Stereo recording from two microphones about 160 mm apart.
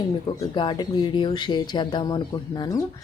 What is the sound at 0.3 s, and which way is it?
Speech, 30° left (ahead or behind).